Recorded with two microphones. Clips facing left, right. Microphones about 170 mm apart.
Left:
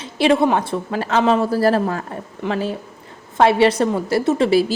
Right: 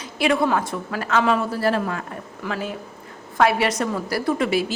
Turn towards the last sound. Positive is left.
turn(degrees=30)  # may be behind; listen again after turning